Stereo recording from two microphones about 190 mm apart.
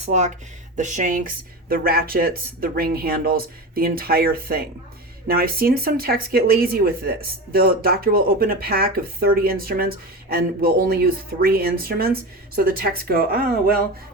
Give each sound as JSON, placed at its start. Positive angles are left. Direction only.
{"t": 0.0, "sound": "speech", "side_deg": -40}